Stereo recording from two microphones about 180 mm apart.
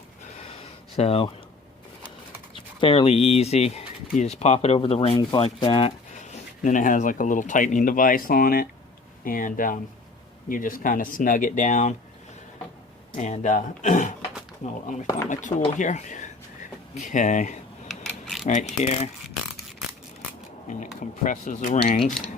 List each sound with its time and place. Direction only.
0.6 s a sound: 35° left (ahead or behind)
2.8 s speech: 30° left (ahead or behind)
6.1 s speech: 40° left (ahead or behind)
13.1 s speech: 40° left (ahead or behind)
18.0 s keys jangling: centre (ahead or behind)
18.4 s speech: 40° left (ahead or behind)
20.7 s speech: 45° left (ahead or behind)